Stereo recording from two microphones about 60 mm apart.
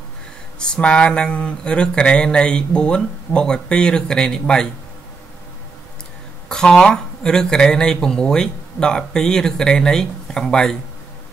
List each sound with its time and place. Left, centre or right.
0.6 s speech: centre
6.5 s speech: centre